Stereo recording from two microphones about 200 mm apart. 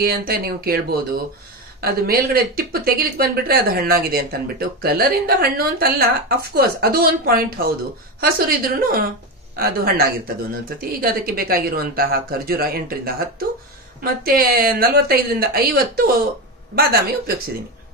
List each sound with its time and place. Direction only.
0.0 s speech: 50° right (ahead or behind)